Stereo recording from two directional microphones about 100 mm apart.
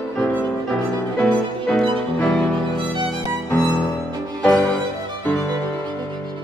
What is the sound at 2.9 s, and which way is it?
Violin, 50° right (ahead or behind).